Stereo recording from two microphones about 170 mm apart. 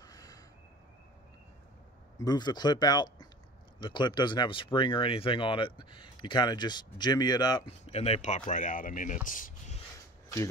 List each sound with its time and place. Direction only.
0.0 s a sound: 20° left (ahead or behind)
2.1 s speech: 25° left (ahead or behind)
7.8 s speech: 35° left (ahead or behind)